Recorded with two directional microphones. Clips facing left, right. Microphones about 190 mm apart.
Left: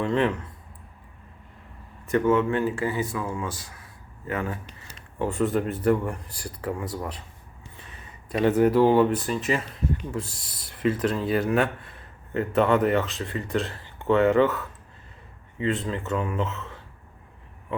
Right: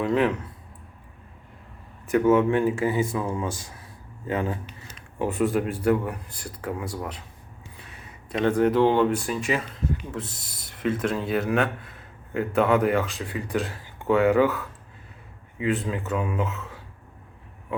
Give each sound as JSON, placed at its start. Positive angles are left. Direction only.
{"t": 0.0, "sound": "speech", "side_deg": -5}
{"t": 2.1, "sound": "speech", "side_deg": -10}
{"t": 4.9, "sound": "a sound", "side_deg": -15}
{"t": 5.5, "sound": "speech", "side_deg": -5}
{"t": 6.4, "sound": "speech", "side_deg": 5}
{"t": 8.5, "sound": "speech", "side_deg": 5}
{"t": 16.6, "sound": "a sound", "side_deg": -5}